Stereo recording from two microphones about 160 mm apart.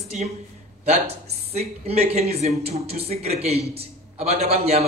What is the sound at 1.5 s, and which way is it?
Speech, 40° right (ahead or behind).